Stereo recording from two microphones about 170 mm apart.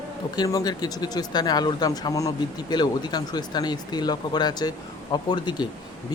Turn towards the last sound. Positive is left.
turn(degrees=25)  # may be behind; listen again after turning